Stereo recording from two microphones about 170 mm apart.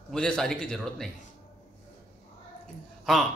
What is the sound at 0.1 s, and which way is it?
Mantra, 5° left (ahead or behind).